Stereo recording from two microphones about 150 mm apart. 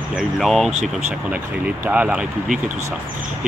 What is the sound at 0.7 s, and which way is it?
Speech, 50° right (ahead or behind).